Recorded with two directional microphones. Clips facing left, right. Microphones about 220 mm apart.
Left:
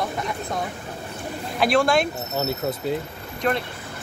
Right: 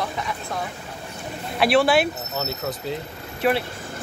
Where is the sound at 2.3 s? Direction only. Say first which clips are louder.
Left 3 dB; 25° left (ahead or behind).